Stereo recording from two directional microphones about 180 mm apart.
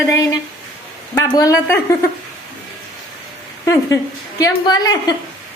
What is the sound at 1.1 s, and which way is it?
Speech, 20° left (ahead or behind).